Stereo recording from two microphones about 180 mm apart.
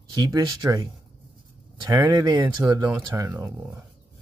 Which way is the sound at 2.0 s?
20° right (ahead or behind).